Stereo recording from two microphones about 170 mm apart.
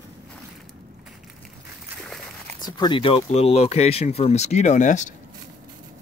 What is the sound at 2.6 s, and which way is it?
Speech, 25° left (ahead or behind).